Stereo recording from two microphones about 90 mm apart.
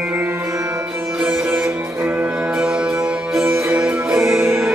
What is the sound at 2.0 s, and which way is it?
Music, 20° right (ahead or behind).